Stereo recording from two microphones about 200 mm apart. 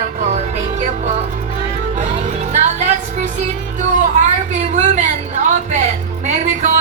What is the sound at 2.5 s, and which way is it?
Music, 35° right (ahead or behind).